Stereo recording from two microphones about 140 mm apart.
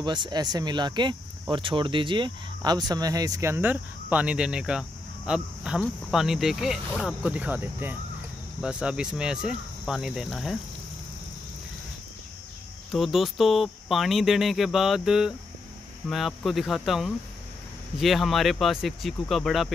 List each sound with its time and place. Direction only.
0.0 s speech: 30° right (ahead or behind); by 10.6 s centre (ahead or behind)
12.9 s speech: centre (ahead or behind)